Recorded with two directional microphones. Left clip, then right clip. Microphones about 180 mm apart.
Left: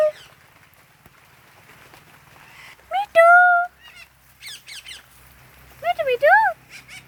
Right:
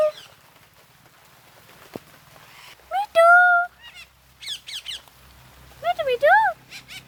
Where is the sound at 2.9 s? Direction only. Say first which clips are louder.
Left 2 dB; 10° left (ahead or behind).